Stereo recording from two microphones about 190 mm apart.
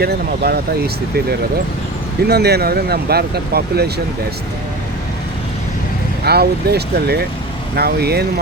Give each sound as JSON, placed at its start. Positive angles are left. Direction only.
{"t": 0.0, "sound": "speech", "side_deg": -55}
{"t": 2.2, "sound": "speech", "side_deg": -60}
{"t": 6.2, "sound": "speech", "side_deg": -55}